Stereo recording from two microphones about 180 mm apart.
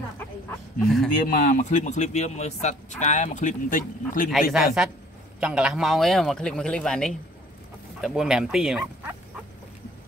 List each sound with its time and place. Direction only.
0.2 s speech: 5° left (ahead or behind)
1.1 s a man's voice: 45° left (ahead or behind)
4.3 s a man's voice: centre (ahead or behind)